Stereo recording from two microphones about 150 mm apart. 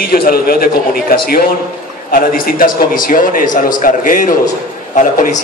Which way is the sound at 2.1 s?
70° left (ahead or behind).